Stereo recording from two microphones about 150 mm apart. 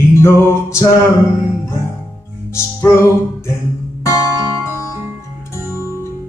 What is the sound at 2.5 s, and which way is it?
Music, 20° left (ahead or behind).